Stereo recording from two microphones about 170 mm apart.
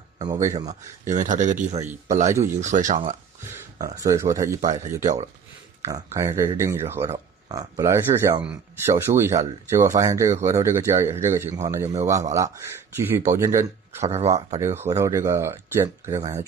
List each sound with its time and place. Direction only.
0.2 s speech: 20° right (ahead or behind)
1.1 s speech: 45° right (ahead or behind)
2.3 s speech: 15° right (ahead or behind)
2.6 s speech: 45° right (ahead or behind)
3.8 s speech: 20° right (ahead or behind)
5.9 s speech: 20° right (ahead or behind)
14.1 s speech: 40° right (ahead or behind)
14.8 s speech: 20° right (ahead or behind)